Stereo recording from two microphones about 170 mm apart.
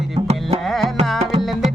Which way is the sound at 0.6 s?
Centre (ahead or behind).